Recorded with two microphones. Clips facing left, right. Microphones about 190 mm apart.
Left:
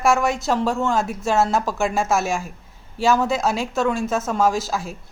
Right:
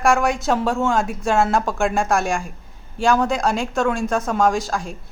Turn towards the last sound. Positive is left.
turn(degrees=5)  # may be behind; listen again after turning